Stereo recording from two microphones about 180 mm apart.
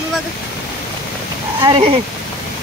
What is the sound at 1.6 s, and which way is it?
Speech, 25° right (ahead or behind).